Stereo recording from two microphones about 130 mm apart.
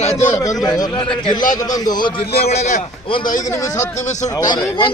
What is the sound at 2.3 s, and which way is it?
Speech, 55° left (ahead or behind).